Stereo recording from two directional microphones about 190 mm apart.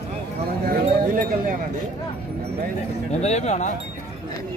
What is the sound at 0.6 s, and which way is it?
Speech, 45° right (ahead or behind).